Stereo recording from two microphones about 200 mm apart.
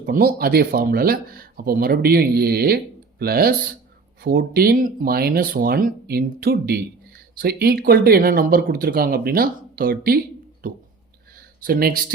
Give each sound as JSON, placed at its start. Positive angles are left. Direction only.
{"t": 0.0, "sound": "speech", "side_deg": -45}
{"t": 11.6, "sound": "speech", "side_deg": -50}